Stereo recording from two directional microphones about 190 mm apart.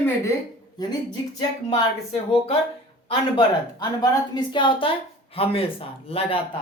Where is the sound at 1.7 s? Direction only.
30° left (ahead or behind).